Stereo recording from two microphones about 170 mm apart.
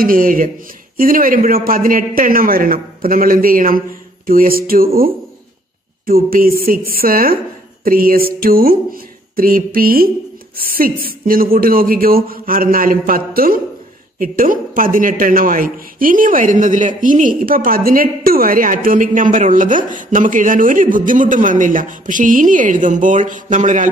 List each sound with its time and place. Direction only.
0.0 s a man's voice: 55° right (ahead or behind)